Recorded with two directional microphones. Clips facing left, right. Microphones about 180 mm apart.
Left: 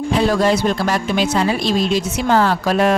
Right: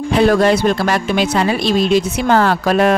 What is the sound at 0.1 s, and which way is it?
Speech, 65° right (ahead or behind).